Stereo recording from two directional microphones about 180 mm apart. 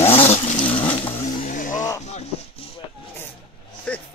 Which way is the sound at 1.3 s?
45° left (ahead or behind).